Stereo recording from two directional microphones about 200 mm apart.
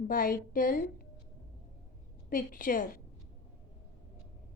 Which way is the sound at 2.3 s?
45° left (ahead or behind).